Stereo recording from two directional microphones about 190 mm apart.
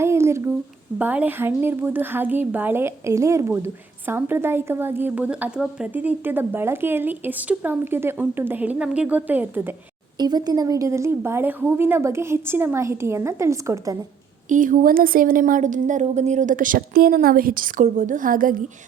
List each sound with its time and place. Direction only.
0.0 s a sound: 15° right (ahead or behind)
0.9 s a woman's voice: 10° right (ahead or behind)
10.2 s a woman's voice: 20° right (ahead or behind)
14.5 s speech: 45° right (ahead or behind)